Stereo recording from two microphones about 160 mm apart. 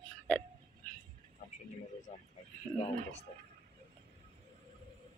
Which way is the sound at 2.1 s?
40° left (ahead or behind).